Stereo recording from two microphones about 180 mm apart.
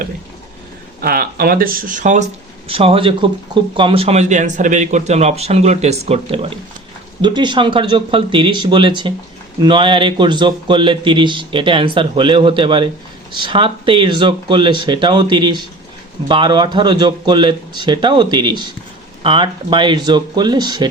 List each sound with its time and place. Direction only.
1.0 s speech: 55° right (ahead or behind)
2.6 s speech: 30° right (ahead or behind)